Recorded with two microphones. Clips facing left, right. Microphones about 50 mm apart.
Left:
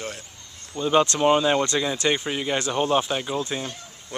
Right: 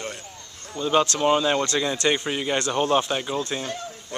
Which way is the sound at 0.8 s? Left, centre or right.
Centre.